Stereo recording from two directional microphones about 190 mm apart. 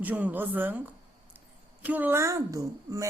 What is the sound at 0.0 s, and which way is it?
Speech, 10° right (ahead or behind).